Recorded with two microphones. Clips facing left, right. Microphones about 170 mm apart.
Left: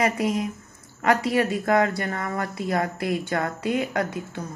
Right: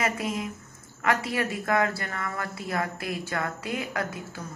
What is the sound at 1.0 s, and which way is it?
Speech, 30° left (ahead or behind).